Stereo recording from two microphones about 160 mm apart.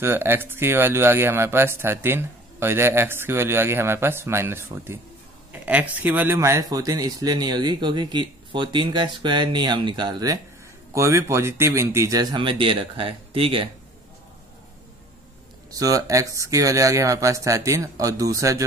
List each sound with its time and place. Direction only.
0.0 s speech: 15° right (ahead or behind); by 13.7 s 35° right (ahead or behind)
15.7 s speech: 20° right (ahead or behind)